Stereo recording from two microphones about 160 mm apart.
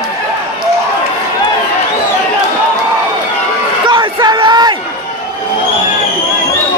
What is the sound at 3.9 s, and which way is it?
Crowd, 25° right (ahead or behind).